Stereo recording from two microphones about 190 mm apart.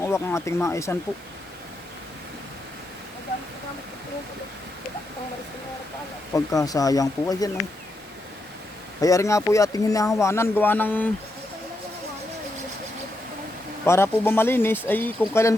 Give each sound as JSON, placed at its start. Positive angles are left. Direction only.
{"t": 0.0, "sound": "speech", "side_deg": 15}
{"t": 6.3, "sound": "speech", "side_deg": 15}
{"t": 9.0, "sound": "speech", "side_deg": 15}
{"t": 13.8, "sound": "speech", "side_deg": 15}